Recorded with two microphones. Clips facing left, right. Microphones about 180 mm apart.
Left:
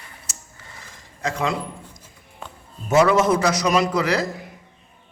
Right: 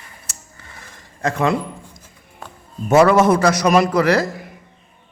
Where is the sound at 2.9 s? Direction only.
60° right (ahead or behind).